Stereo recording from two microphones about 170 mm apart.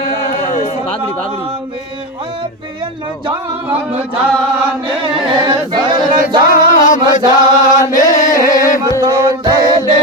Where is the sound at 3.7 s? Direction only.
10° right (ahead or behind).